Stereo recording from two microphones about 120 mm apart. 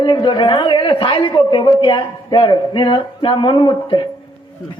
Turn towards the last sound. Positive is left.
turn(degrees=40)  # may be behind; listen again after turning